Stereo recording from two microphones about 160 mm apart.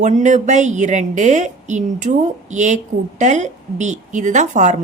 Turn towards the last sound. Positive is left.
turn(degrees=-50)  # may be behind; listen again after turning